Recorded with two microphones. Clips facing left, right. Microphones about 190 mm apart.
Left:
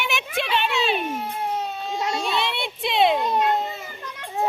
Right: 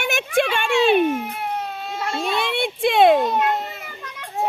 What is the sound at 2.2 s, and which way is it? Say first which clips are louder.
A woman's voice: right 3 dB; 50° right (ahead or behind).